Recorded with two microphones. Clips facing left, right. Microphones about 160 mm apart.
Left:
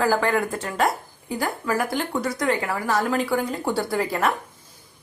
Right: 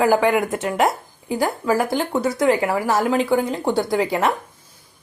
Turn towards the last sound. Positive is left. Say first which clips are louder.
# right 4 dB
turn(degrees=-20)  # may be behind; listen again after turning